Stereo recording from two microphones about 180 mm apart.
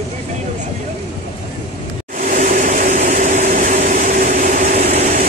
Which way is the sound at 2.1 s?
45° right (ahead or behind).